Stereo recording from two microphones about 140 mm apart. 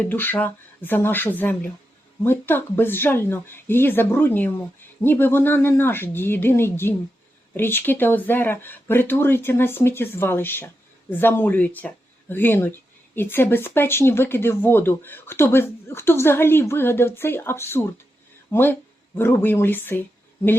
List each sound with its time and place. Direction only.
0.0 s speech: 15° left (ahead or behind)